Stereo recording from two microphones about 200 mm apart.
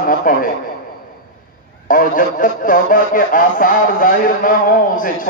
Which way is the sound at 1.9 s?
40° left (ahead or behind).